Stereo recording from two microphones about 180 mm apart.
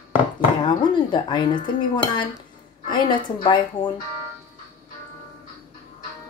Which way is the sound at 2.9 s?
25° left (ahead or behind).